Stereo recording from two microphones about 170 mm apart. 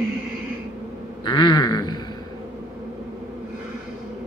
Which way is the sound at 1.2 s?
25° left (ahead or behind).